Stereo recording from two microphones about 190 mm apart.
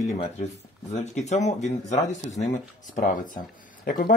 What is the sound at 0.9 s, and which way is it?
Speech, 35° left (ahead or behind).